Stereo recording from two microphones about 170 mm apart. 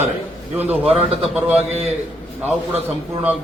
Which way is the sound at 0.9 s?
35° right (ahead or behind).